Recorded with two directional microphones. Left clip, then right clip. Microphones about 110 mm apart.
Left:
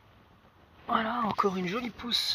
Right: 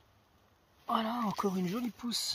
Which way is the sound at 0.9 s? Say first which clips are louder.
Left 4 dB; 30° right (ahead or behind).